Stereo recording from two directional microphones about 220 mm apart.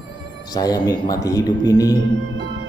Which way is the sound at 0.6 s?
15° left (ahead or behind).